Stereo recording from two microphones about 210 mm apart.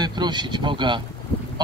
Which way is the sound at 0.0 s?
20° right (ahead or behind).